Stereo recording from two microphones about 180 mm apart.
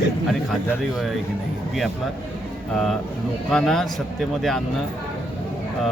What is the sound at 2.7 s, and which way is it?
Speech, centre (ahead or behind).